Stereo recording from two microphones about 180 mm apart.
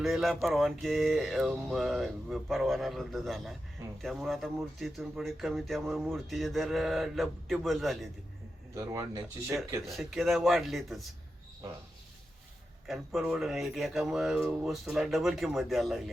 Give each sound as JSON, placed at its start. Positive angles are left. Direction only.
{"t": 0.0, "sound": "speech", "side_deg": 0}
{"t": 8.7, "sound": "speech", "side_deg": -15}
{"t": 9.8, "sound": "speech", "side_deg": 0}
{"t": 12.9, "sound": "speech", "side_deg": 0}